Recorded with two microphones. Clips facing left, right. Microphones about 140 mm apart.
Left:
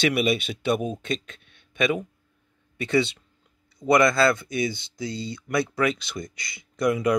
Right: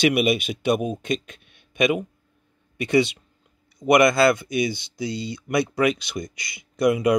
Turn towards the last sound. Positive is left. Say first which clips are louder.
# right 3 dB
turn(degrees=-20)  # may be behind; listen again after turning